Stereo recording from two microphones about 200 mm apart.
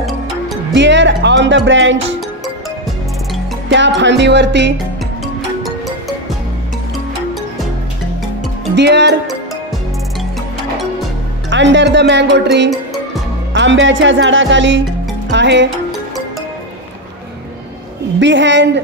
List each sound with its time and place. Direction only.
0.0 s music: centre (ahead or behind)
0.7 s speech: 65° right (ahead or behind)
3.6 s speech: 65° right (ahead or behind)
5.2 s music: centre (ahead or behind)
8.7 s speech: 60° right (ahead or behind)
11.5 s speech: 65° right (ahead or behind)
13.5 s music: 65° right (ahead or behind)
15.3 s speech: 65° right (ahead or behind)
18.2 s speech: 65° right (ahead or behind)